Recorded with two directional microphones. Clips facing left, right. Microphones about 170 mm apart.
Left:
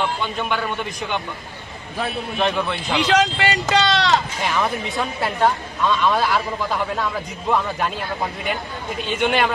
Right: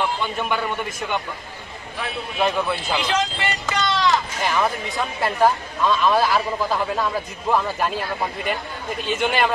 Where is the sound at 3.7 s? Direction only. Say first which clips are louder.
Left 2 dB; 75° left (ahead or behind).